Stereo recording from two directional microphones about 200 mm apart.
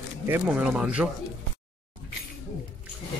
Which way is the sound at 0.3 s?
5° right (ahead or behind).